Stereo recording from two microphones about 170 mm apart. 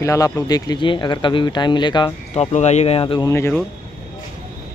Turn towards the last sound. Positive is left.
turn(degrees=10)  # may be behind; listen again after turning